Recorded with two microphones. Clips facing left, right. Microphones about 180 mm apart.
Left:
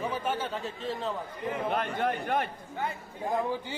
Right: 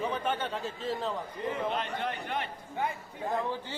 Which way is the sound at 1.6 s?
50° left (ahead or behind).